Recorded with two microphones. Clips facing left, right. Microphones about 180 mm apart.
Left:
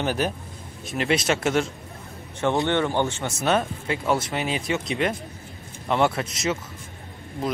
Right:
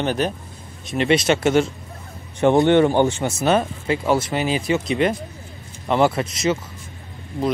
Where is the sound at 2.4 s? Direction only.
15° right (ahead or behind).